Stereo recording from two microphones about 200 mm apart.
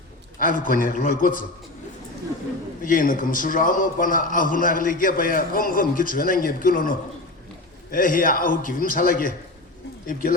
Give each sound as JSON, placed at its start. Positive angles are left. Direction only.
{"t": 0.3, "sound": "a man's voice", "side_deg": 45}
{"t": 2.8, "sound": "a man's voice", "side_deg": 40}